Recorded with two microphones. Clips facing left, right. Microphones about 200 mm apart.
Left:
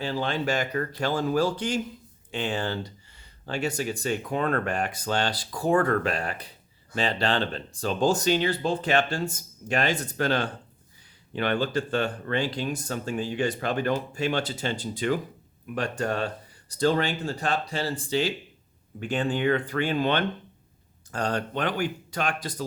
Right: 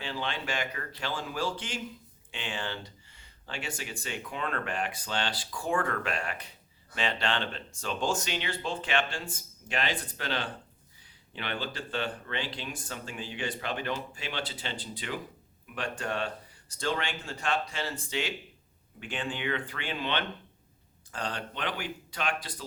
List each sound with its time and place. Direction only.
0.0 s speech: 40° left (ahead or behind)